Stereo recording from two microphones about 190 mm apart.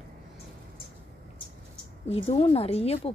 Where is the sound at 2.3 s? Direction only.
30° left (ahead or behind).